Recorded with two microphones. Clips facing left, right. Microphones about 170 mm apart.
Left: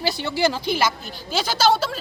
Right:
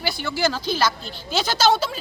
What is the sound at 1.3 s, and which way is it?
Speech, 5° left (ahead or behind).